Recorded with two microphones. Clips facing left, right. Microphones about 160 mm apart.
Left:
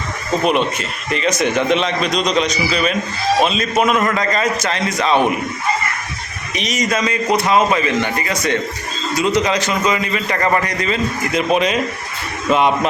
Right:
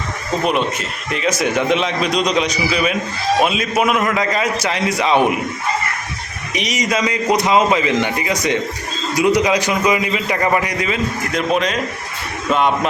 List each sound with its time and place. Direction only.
0.4 s a man's voice: centre (ahead or behind)
6.5 s a man's voice: 15° right (ahead or behind)
11.3 s speech: 5° left (ahead or behind)
12.5 s music: 5° left (ahead or behind)